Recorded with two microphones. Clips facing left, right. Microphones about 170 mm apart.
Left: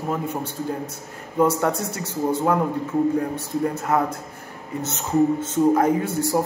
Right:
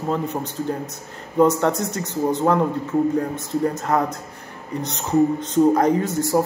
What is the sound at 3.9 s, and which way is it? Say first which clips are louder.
Speech: even; 10° left (ahead or behind).